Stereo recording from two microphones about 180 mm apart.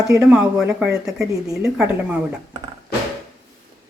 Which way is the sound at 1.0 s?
20° right (ahead or behind).